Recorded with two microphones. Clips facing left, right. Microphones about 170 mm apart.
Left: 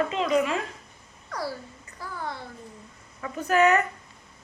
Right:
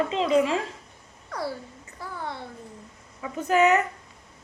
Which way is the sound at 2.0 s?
25° right (ahead or behind).